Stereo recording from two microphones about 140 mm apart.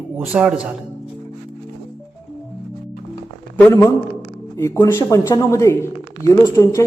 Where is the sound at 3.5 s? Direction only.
15° left (ahead or behind).